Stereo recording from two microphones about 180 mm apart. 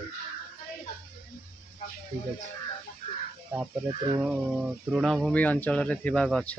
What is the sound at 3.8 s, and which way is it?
Speech, 30° right (ahead or behind).